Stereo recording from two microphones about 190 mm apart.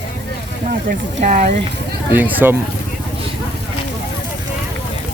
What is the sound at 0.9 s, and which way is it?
Speech, 45° right (ahead or behind).